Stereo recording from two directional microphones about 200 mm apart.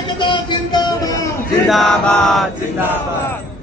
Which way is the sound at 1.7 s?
Centre (ahead or behind).